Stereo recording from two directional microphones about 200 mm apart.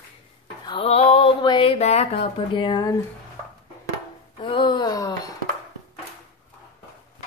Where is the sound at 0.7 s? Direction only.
30° left (ahead or behind).